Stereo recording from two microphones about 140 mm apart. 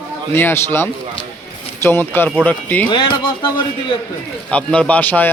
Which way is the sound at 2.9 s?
35° left (ahead or behind).